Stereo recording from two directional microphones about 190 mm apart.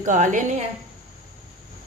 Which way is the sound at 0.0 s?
40° right (ahead or behind).